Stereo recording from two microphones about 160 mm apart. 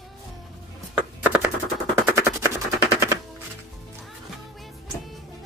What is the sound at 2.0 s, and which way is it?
Machine gun, 20° right (ahead or behind).